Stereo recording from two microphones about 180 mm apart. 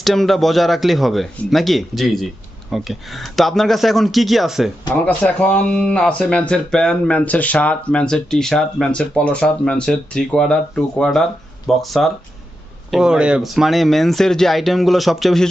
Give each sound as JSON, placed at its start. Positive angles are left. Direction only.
{"t": 0.0, "sound": "speech", "side_deg": 0}